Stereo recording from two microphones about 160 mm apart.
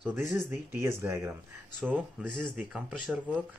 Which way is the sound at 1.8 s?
5° right (ahead or behind).